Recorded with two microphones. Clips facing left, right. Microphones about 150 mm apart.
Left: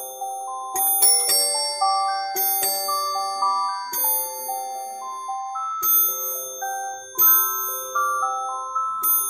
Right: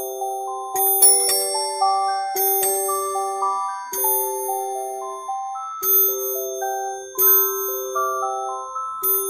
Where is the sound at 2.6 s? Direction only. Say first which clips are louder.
Right 5 dB; centre (ahead or behind).